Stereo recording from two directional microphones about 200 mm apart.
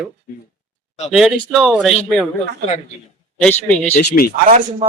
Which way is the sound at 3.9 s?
50° left (ahead or behind).